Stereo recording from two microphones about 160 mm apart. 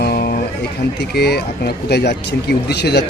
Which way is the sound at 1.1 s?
90° left.